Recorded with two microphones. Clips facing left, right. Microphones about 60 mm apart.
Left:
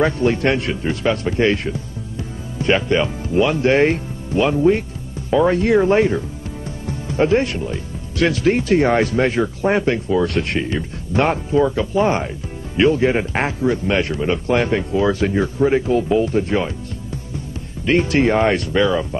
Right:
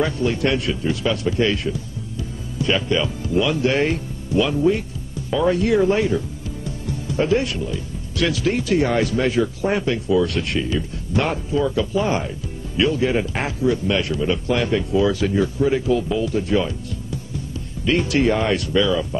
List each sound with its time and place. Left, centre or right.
0.0 s speech: left
17.8 s speech: left